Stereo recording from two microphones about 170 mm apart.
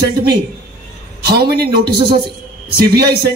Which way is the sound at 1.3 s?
65° right (ahead or behind).